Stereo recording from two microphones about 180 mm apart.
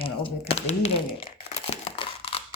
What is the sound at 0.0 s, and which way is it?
Crumpling, 35° left (ahead or behind).